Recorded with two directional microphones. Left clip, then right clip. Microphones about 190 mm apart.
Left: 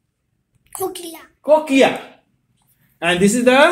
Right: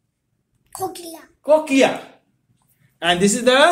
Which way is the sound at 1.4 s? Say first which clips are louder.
Left 2 dB; 35° left (ahead or behind).